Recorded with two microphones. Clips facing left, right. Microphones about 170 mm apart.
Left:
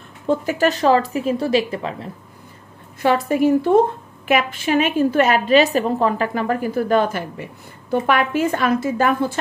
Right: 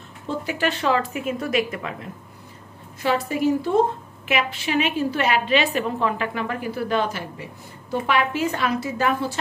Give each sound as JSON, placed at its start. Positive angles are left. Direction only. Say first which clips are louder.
{"t": 0.3, "sound": "speech", "louder": "left 7 dB", "side_deg": 45}
{"t": 3.0, "sound": "a woman's voice", "louder": "left 5 dB", "side_deg": 55}